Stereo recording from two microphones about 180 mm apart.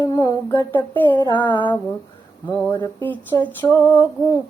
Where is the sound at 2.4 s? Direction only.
10° left (ahead or behind).